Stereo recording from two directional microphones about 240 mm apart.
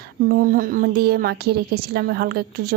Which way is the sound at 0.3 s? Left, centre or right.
Right.